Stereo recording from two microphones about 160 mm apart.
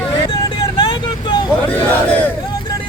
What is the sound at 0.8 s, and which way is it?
Vehicle, 30° left (ahead or behind).